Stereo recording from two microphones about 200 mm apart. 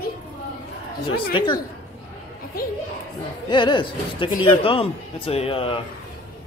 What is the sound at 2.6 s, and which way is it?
Speech, 50° left (ahead or behind).